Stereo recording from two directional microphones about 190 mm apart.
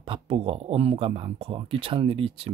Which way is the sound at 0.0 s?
30° right (ahead or behind).